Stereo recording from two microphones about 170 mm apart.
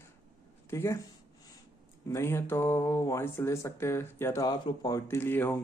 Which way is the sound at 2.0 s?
15° left (ahead or behind).